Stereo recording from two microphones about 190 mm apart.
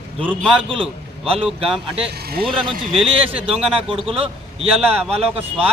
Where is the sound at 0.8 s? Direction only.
30° right (ahead or behind).